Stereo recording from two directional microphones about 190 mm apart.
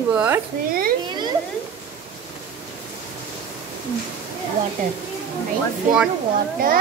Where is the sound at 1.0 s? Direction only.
25° right (ahead or behind).